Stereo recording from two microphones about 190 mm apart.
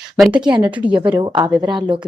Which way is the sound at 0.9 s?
25° right (ahead or behind).